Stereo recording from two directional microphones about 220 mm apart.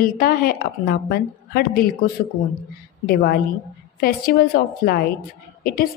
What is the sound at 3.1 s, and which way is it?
A woman's voice, 45° left (ahead or behind).